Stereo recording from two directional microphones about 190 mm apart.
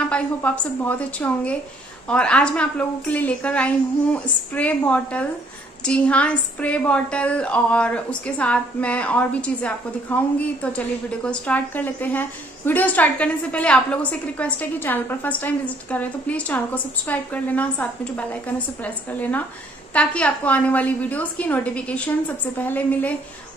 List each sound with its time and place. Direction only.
0.1 s a woman's voice: 10° left (ahead or behind)